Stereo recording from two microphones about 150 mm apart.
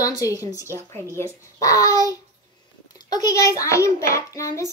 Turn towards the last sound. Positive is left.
turn(degrees=20)  # may be behind; listen again after turning